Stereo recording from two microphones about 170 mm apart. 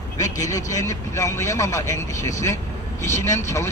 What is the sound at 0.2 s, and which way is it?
Speech, 20° left (ahead or behind).